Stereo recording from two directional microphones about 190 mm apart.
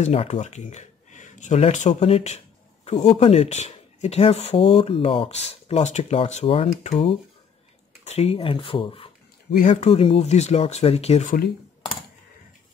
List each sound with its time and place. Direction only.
0.0 s speech: 35° left (ahead or behind)
8.0 s speech: 35° left (ahead or behind)
9.5 s speech: 45° left (ahead or behind)